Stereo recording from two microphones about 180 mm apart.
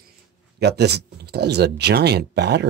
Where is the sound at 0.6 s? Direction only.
65° right (ahead or behind).